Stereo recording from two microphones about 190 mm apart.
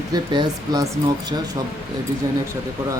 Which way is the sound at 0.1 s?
20° right (ahead or behind).